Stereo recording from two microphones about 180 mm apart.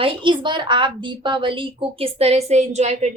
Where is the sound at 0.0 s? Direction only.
25° right (ahead or behind).